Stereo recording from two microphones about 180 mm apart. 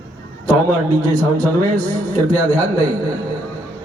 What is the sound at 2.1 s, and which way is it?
Speech, 10° left (ahead or behind).